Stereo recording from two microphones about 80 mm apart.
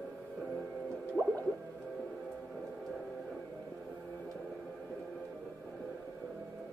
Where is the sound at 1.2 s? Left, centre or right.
Centre.